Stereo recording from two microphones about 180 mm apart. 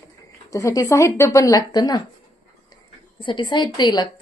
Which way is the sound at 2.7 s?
25° left (ahead or behind).